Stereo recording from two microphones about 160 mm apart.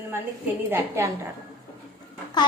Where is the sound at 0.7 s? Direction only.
15° right (ahead or behind).